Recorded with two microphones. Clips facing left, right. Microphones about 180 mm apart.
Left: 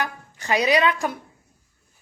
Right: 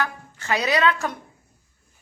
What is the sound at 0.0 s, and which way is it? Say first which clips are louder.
A woman's voice: right 1 dB; 15° left (ahead or behind).